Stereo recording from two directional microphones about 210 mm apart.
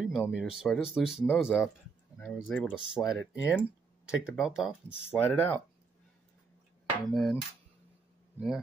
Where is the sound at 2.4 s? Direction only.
10° left (ahead or behind).